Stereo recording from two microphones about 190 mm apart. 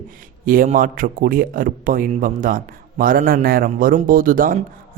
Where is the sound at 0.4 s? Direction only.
45° right (ahead or behind).